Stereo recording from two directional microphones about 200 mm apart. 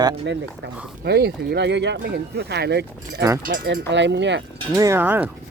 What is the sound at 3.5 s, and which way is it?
Speech, 60° right (ahead or behind).